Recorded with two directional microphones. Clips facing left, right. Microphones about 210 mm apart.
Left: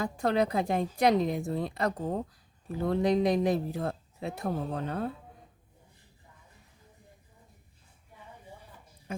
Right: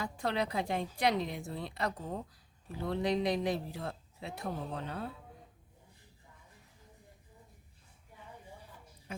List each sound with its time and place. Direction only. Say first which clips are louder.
0.0 s speech: left 7 dB; 45° left (ahead or behind)
9.1 s music: left 6 dB; 45° left (ahead or behind)